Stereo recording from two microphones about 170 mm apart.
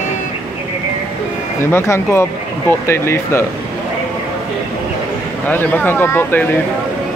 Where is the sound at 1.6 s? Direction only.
15° left (ahead or behind).